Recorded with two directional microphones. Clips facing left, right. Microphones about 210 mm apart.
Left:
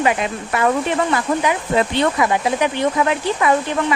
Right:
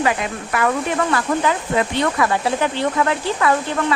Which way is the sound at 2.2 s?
15° left (ahead or behind).